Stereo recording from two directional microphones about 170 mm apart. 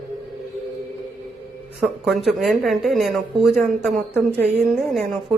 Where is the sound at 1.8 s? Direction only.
Centre (ahead or behind).